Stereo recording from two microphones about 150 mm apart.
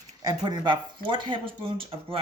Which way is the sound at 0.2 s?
30° right (ahead or behind).